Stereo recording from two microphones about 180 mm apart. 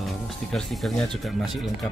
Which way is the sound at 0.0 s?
Centre (ahead or behind).